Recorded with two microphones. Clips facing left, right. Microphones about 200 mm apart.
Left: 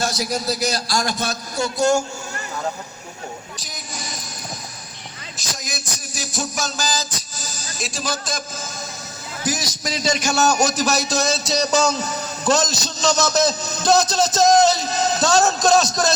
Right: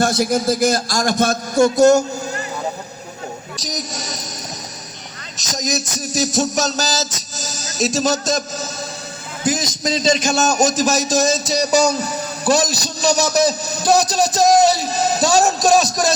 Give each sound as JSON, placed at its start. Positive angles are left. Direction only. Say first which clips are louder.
{"t": 0.0, "sound": "a man's voice", "louder": "right 7 dB", "side_deg": -55}
{"t": 3.6, "sound": "music", "louder": "right 7 dB", "side_deg": -40}
{"t": 5.5, "sound": "music", "louder": "right 9 dB", "side_deg": -40}
{"t": 9.4, "sound": "a man's voice", "louder": "right 5 dB", "side_deg": -25}